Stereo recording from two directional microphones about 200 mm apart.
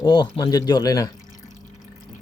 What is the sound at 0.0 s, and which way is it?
Speech, 20° left (ahead or behind).